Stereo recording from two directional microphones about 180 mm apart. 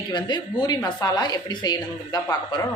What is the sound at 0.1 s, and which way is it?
A woman's voice, 25° left (ahead or behind).